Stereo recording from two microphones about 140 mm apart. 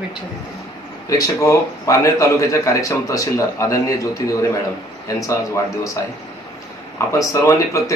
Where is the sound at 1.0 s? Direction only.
25° left (ahead or behind).